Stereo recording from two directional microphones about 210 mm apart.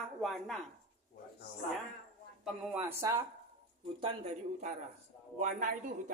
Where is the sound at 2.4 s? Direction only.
10° right (ahead or behind).